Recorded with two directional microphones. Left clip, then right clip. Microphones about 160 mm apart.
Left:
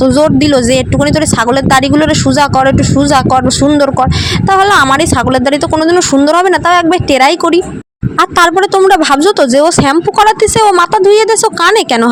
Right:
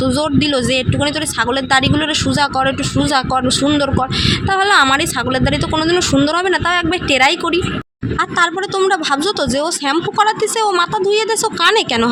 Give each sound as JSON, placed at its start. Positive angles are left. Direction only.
{"t": 0.0, "sound": "speech", "side_deg": 45}